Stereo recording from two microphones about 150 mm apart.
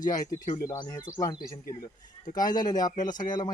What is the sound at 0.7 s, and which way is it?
Speech, 25° left (ahead or behind).